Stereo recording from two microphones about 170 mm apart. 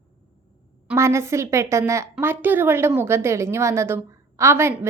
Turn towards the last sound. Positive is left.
turn(degrees=-15)  # may be behind; listen again after turning